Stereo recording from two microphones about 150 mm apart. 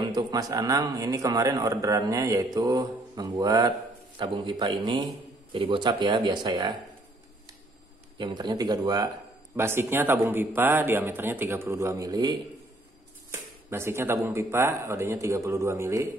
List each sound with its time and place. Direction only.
0.0 s a man's voice: 25° right (ahead or behind)
8.2 s a man's voice: 30° right (ahead or behind)